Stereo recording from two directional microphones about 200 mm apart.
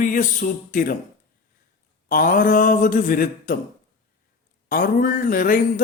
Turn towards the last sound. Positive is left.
turn(degrees=45)  # may be behind; listen again after turning